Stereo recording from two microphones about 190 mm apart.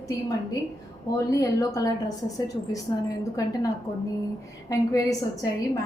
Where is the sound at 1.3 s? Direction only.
15° left (ahead or behind).